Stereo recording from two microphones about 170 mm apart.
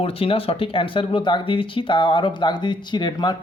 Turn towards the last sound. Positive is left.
turn(degrees=25)  # may be behind; listen again after turning